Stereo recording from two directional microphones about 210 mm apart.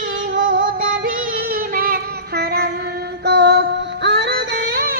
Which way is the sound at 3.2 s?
50° right (ahead or behind).